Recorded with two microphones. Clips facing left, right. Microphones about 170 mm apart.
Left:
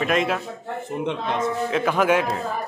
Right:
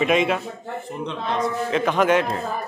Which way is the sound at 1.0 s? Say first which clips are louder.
Even; 25° left (ahead or behind).